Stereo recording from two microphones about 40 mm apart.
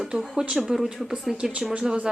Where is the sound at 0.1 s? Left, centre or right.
Right.